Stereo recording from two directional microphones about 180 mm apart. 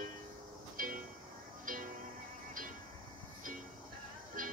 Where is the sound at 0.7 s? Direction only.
50° right (ahead or behind).